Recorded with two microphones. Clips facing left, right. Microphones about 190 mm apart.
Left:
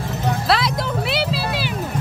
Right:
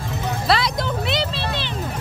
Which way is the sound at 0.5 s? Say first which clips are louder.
Even; centre (ahead or behind).